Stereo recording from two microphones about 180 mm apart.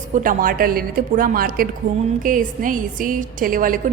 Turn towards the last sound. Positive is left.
turn(degrees=-50)  # may be behind; listen again after turning